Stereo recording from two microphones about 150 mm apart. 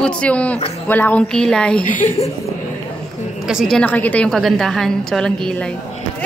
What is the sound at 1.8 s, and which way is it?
Speech, 60° left (ahead or behind).